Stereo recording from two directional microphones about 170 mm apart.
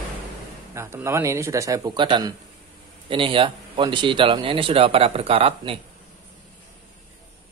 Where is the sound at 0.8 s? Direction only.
15° right (ahead or behind); by 5.8 s 35° right (ahead or behind).